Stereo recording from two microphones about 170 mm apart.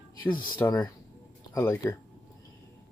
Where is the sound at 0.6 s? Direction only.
20° left (ahead or behind).